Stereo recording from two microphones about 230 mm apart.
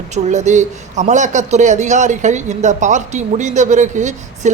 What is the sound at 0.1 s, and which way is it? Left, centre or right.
Speech, right.